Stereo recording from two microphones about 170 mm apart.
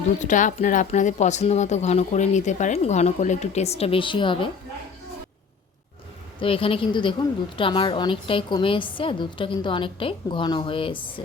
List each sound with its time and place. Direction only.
0.2 s speech: 50° left (ahead or behind); by 4.4 s 30° left (ahead or behind)
6.4 s a woman's voice: 30° left (ahead or behind)